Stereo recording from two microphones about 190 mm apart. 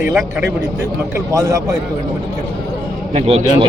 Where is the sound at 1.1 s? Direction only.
15° right (ahead or behind).